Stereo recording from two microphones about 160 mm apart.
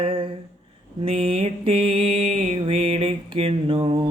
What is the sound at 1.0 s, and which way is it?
Mantra, 35° right (ahead or behind).